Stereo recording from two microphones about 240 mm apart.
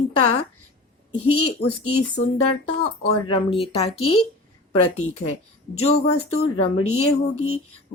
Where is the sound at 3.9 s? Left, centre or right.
Left.